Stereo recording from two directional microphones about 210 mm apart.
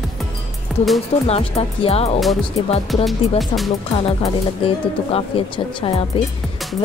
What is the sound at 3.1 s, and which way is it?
Music, centre (ahead or behind).